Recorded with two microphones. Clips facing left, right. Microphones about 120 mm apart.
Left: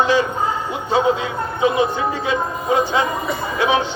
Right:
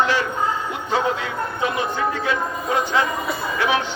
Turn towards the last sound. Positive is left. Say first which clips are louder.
# left 3 dB
turn(degrees=20)  # may be behind; listen again after turning